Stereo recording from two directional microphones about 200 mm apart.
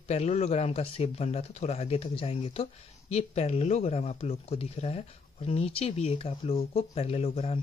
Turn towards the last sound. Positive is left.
turn(degrees=30)  # may be behind; listen again after turning